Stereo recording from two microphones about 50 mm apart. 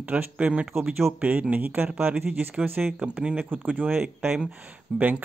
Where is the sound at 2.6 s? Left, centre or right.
Right.